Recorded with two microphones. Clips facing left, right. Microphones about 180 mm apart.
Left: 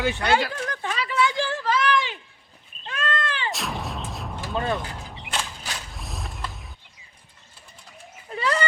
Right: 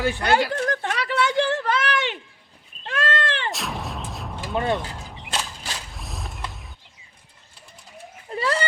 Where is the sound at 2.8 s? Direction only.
80° right.